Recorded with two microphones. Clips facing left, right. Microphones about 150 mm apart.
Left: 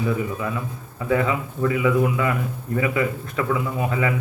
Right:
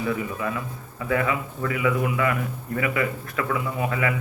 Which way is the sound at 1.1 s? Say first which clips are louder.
Left 3 dB; 20° left (ahead or behind).